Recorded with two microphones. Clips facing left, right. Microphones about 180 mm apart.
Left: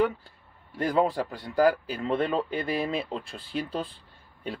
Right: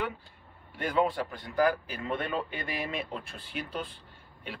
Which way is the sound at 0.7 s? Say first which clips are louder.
Left 3 dB; 35° left (ahead or behind).